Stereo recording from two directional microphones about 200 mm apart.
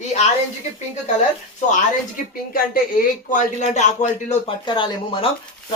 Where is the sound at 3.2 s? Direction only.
40° left (ahead or behind).